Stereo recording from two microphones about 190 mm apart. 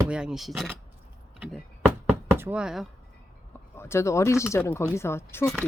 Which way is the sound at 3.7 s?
15° left (ahead or behind).